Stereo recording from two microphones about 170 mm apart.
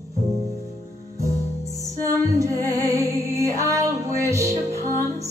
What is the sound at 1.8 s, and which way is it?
Music, 20° right (ahead or behind).